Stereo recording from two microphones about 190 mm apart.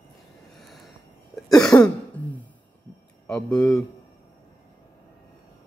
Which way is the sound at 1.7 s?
10° left (ahead or behind).